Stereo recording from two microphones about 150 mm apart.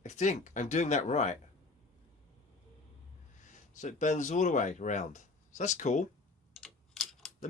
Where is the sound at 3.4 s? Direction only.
55° left (ahead or behind).